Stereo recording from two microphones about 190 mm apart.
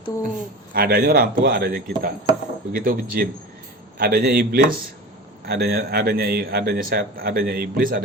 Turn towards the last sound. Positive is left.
turn(degrees=-50)  # may be behind; listen again after turning